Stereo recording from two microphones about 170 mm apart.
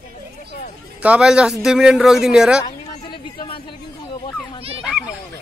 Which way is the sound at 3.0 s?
30° left (ahead or behind).